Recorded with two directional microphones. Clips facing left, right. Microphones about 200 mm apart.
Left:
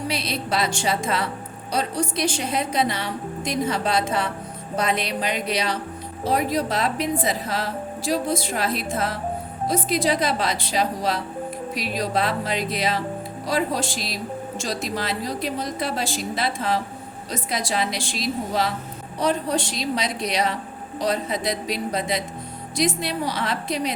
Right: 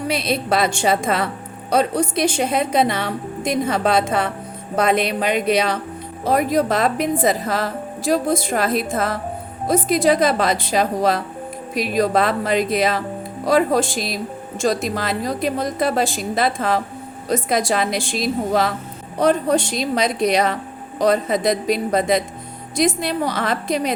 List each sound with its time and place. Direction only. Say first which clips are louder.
0.1 s a woman's voice: right 9 dB; 55° right (ahead or behind)